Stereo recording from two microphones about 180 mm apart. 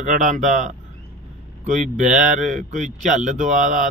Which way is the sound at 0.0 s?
45° right (ahead or behind).